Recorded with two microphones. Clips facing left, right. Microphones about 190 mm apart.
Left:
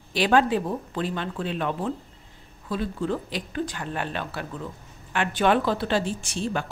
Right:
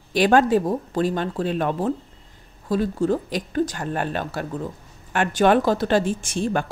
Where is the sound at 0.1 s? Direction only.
45° right (ahead or behind).